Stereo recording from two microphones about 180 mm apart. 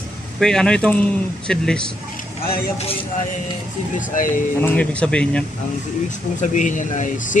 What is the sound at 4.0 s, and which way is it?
Speech, 45° left (ahead or behind).